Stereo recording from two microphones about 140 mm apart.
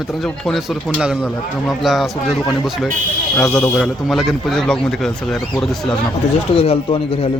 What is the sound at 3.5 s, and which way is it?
Speech, 15° left (ahead or behind).